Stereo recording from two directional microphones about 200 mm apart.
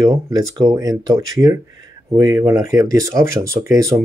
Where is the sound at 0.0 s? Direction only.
20° right (ahead or behind).